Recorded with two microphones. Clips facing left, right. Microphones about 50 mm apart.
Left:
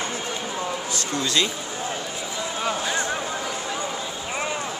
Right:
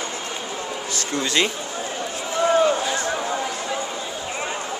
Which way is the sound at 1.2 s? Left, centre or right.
Right.